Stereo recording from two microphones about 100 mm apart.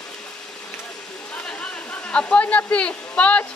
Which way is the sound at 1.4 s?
15° left (ahead or behind).